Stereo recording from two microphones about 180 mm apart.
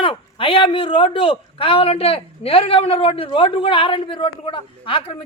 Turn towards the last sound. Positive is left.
turn(degrees=30)  # may be behind; listen again after turning